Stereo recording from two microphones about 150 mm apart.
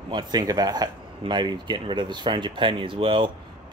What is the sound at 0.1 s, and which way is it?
Speech, 30° right (ahead or behind).